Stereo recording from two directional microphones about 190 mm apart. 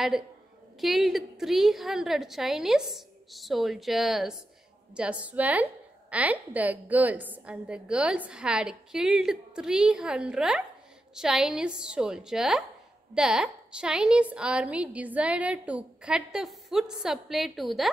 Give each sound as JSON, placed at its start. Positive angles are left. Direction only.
{"t": 0.7, "sound": "a woman's voice", "side_deg": 0}